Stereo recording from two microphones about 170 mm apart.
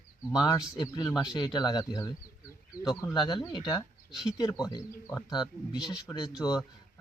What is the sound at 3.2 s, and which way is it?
Speech, 25° left (ahead or behind).